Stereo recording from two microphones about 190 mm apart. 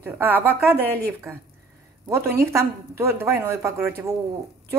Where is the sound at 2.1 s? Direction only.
15° right (ahead or behind).